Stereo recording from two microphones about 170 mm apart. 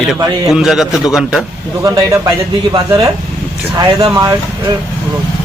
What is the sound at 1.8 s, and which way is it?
Speech, 20° right (ahead or behind).